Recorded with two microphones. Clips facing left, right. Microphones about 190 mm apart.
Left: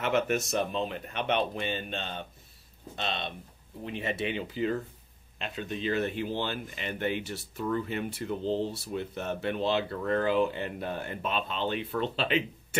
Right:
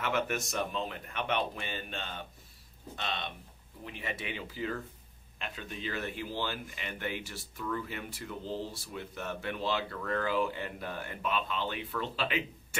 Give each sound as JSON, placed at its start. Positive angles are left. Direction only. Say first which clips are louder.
{"t": 0.0, "sound": "speech", "louder": "left 5 dB", "side_deg": 25}